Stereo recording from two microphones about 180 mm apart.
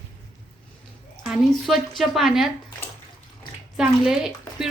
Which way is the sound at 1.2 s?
Centre (ahead or behind).